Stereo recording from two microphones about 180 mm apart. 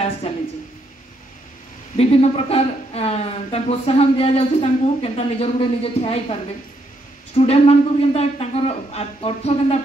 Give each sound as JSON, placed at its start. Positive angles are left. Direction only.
{"t": 2.0, "sound": "a man's voice", "side_deg": 35}
{"t": 7.3, "sound": "a man's voice", "side_deg": 35}